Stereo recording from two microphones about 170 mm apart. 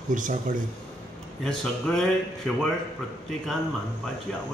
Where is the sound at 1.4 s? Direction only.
5° left (ahead or behind).